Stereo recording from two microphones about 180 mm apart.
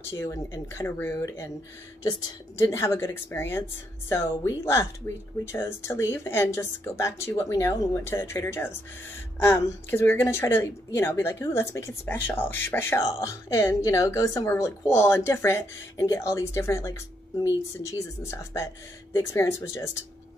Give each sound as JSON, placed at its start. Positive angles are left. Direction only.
{"t": 0.1, "sound": "speech", "side_deg": 15}
{"t": 2.6, "sound": "speech", "side_deg": 15}